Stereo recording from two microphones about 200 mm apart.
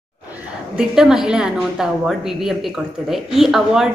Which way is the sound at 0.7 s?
Centre (ahead or behind).